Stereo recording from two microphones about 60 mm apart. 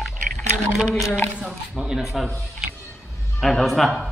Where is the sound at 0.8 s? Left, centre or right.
Centre.